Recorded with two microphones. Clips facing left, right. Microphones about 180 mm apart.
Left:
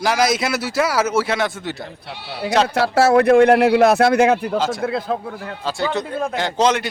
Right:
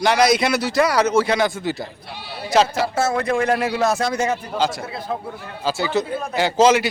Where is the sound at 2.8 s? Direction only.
65° left (ahead or behind).